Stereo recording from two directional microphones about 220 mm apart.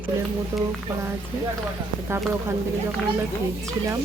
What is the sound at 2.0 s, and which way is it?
Speech, 10° right (ahead or behind).